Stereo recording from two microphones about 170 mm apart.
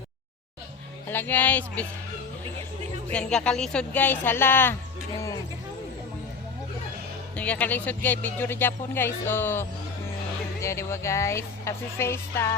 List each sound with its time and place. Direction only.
1.0 s speech: 10° left (ahead or behind)
3.1 s speech: 5° left (ahead or behind)
7.3 s speech: 10° left (ahead or behind)